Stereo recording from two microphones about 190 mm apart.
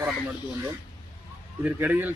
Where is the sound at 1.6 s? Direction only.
10° right (ahead or behind).